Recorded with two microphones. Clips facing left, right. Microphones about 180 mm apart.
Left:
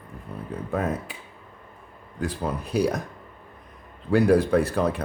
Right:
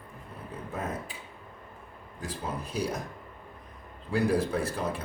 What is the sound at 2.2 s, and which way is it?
Speech, 65° left (ahead or behind).